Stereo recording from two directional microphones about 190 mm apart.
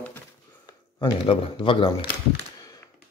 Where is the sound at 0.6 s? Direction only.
25° left (ahead or behind).